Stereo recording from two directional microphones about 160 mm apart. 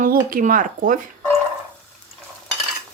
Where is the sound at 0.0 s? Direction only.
60° right (ahead or behind).